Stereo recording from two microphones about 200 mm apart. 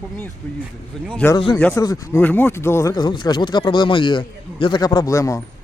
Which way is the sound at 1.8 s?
15° left (ahead or behind).